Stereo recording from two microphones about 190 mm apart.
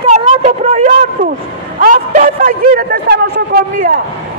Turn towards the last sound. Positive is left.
turn(degrees=-50)  # may be behind; listen again after turning